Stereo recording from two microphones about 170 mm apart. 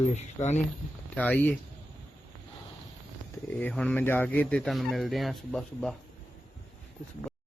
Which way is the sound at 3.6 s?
10° left (ahead or behind).